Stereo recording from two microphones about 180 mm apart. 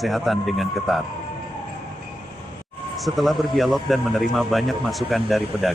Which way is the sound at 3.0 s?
Centre (ahead or behind).